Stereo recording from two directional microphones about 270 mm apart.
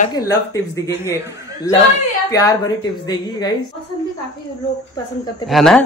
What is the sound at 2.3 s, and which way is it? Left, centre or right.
A woman's voice, centre.